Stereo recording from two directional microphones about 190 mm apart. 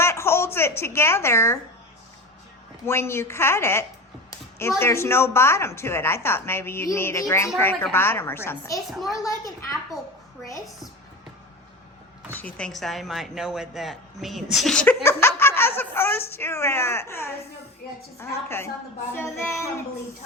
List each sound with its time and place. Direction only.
0.0 s a sound: 15° left (ahead or behind)
2.8 s a woman's voice: 15° left (ahead or behind)
8.9 s a woman's voice: centre (ahead or behind)
9.1 s a woman's voice: 15° left (ahead or behind)
12.3 s a woman's voice: 10° left (ahead or behind)